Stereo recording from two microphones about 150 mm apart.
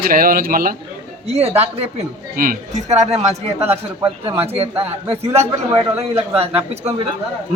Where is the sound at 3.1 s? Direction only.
20° right (ahead or behind).